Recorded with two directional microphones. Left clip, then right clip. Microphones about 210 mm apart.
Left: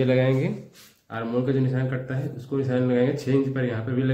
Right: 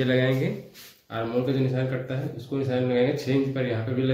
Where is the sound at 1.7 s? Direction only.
25° left (ahead or behind).